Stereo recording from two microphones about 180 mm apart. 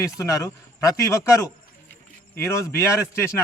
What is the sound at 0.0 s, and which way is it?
A man's voice, 15° left (ahead or behind).